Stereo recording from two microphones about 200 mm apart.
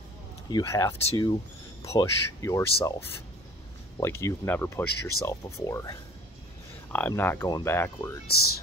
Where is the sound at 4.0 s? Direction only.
15° left (ahead or behind).